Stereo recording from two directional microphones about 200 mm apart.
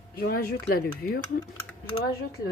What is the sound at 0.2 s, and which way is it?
Speech, 50° left (ahead or behind).